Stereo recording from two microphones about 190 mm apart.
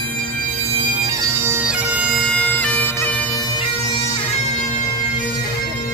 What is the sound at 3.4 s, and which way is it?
Bagpipes, 20° left (ahead or behind).